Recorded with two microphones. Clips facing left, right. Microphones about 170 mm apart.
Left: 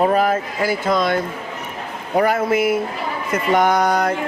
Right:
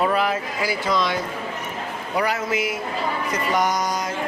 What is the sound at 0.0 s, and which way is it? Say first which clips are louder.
Speech: left 5 dB; 45° left (ahead or behind).